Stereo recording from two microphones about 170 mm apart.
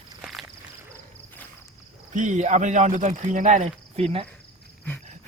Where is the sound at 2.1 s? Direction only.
45° right (ahead or behind).